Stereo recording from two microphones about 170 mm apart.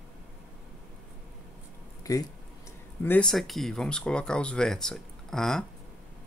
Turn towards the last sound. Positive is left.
turn(degrees=0)  # may be behind; listen again after turning